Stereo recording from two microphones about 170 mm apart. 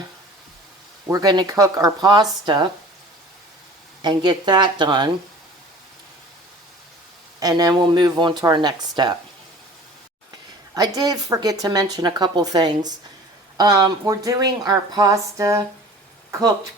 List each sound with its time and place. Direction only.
1.0 s speech: 20° right (ahead or behind)
4.0 s speech: 25° right (ahead or behind)
7.3 s speech: 20° right (ahead or behind)
10.8 s speech: 20° right (ahead or behind)